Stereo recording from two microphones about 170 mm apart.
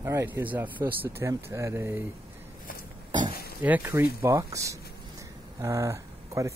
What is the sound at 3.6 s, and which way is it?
Speech, 10° right (ahead or behind).